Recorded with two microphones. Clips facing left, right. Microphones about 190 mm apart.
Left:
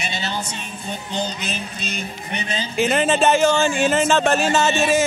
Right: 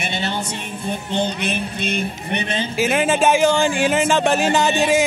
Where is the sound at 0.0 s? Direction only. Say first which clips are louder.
Right 3 dB; 55° right (ahead or behind).